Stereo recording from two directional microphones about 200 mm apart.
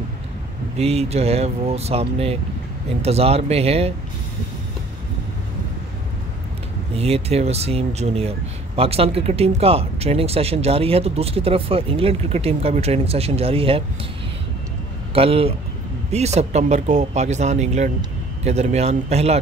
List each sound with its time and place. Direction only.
0.7 s speech: 30° right (ahead or behind)
7.0 s speech: 30° right (ahead or behind)
15.1 s speech: 30° right (ahead or behind)